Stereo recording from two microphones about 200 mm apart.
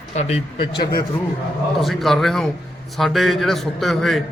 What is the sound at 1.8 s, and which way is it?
A man's voice, centre (ahead or behind).